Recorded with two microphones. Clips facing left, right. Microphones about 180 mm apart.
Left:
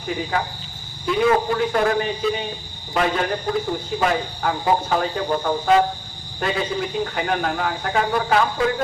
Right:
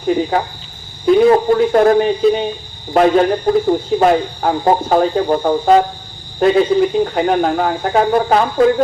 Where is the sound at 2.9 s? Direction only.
45° right (ahead or behind).